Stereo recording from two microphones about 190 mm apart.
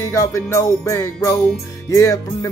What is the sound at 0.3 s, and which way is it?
Music, 15° left (ahead or behind).